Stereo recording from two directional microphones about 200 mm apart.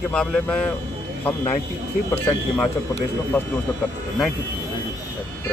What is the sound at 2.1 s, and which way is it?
Speech, 10° left (ahead or behind).